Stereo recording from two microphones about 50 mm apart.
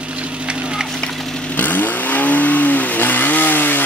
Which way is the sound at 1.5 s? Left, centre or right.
Left.